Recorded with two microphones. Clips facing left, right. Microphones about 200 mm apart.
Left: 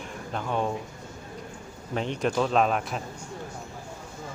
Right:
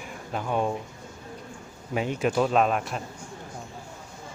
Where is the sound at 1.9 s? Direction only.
10° right (ahead or behind).